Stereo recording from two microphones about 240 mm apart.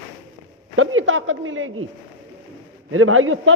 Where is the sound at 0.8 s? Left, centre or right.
Right.